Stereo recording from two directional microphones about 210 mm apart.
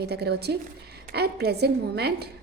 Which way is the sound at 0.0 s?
50° right (ahead or behind).